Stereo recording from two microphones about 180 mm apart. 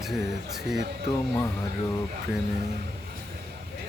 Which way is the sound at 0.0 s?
Centre (ahead or behind).